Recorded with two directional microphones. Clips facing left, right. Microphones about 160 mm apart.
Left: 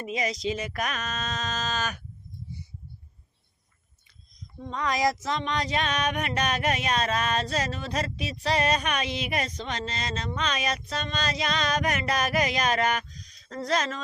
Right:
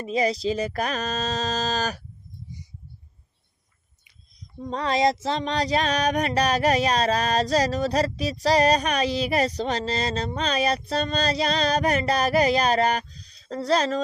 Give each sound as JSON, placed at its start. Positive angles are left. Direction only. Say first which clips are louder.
{"t": 0.0, "sound": "music", "louder": "right 6 dB", "side_deg": -35}
{"t": 4.6, "sound": "music", "louder": "right 4 dB", "side_deg": -35}